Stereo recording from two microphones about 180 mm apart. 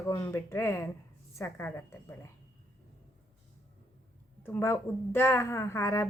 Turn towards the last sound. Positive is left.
turn(degrees=15)  # may be behind; listen again after turning